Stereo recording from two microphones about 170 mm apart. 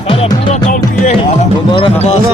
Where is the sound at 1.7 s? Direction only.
35° left (ahead or behind).